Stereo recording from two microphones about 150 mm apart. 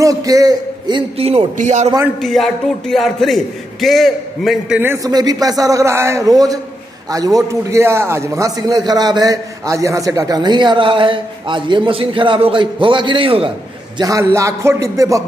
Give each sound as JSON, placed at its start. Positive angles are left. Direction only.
{"t": 0.0, "sound": "a man's voice", "side_deg": -25}
{"t": 2.2, "sound": "speech", "side_deg": 0}
{"t": 4.7, "sound": "a man's voice", "side_deg": -15}
{"t": 13.9, "sound": "a man's voice", "side_deg": -20}